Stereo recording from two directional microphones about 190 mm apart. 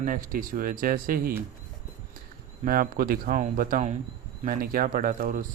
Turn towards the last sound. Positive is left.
turn(degrees=-45)  # may be behind; listen again after turning